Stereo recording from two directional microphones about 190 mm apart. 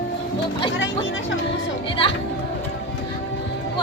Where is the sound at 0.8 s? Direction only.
90° left.